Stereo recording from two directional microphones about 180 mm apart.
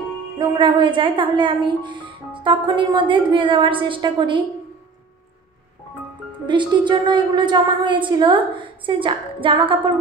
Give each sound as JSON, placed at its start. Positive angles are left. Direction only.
{"t": 0.4, "sound": "a woman's voice", "side_deg": -25}
{"t": 6.4, "sound": "a woman's voice", "side_deg": -25}